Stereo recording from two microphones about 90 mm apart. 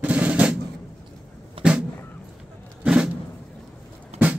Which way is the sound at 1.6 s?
75° right (ahead or behind).